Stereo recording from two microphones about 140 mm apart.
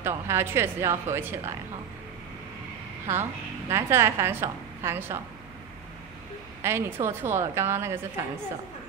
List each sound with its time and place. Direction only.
0.0 s a woman's voice: 20° right (ahead or behind)
3.1 s a woman's voice: 20° right (ahead or behind)
6.6 s a woman's voice: 20° right (ahead or behind)